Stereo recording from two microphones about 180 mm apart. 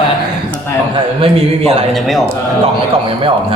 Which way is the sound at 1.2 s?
35° right (ahead or behind).